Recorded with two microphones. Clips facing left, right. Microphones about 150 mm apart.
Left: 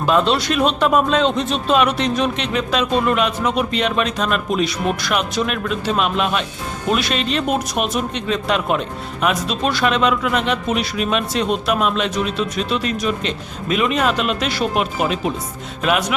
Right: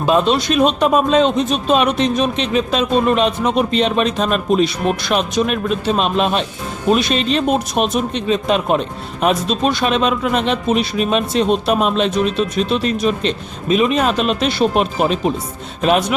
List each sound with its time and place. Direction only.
0.0 s speech: 20° right (ahead or behind)